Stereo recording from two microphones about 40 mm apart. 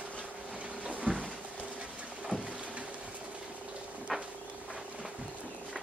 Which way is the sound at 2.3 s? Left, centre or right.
Left.